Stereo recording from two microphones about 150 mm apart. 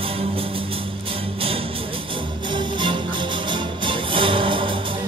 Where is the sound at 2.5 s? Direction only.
30° right (ahead or behind).